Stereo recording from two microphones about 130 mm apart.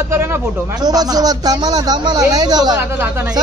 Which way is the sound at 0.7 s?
30° right (ahead or behind).